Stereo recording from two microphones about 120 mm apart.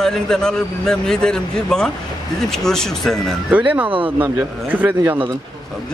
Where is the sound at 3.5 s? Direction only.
10° right (ahead or behind).